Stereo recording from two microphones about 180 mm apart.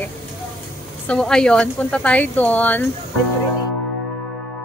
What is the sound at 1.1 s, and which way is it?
Speech, 5° left (ahead or behind).